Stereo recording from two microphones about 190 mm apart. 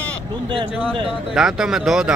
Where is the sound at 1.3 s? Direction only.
5° right (ahead or behind).